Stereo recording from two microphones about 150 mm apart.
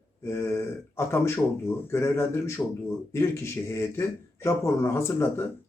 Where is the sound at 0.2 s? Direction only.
20° left (ahead or behind).